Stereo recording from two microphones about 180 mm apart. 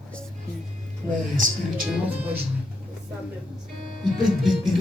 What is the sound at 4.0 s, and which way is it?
Speech, centre (ahead or behind).